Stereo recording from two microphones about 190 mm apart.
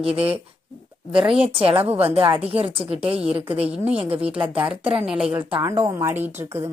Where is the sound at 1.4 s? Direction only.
30° right (ahead or behind).